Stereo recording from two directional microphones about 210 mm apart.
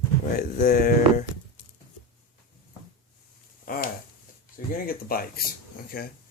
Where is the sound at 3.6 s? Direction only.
45° left (ahead or behind).